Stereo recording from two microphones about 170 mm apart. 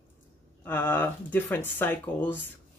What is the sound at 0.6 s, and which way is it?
Speech, 10° left (ahead or behind).